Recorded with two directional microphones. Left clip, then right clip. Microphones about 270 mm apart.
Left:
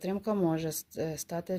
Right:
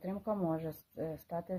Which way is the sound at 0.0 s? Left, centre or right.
Left.